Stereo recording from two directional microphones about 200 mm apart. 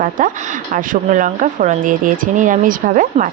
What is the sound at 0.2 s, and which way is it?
Speech, 40° right (ahead or behind).